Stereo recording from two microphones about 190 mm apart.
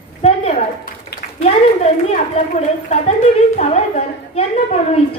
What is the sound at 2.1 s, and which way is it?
A woman's voice, 35° left (ahead or behind).